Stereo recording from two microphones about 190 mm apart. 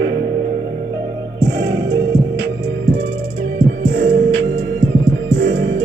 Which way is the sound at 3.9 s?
75° right (ahead or behind).